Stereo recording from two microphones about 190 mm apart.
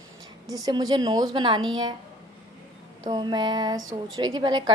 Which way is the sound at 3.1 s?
20° right (ahead or behind).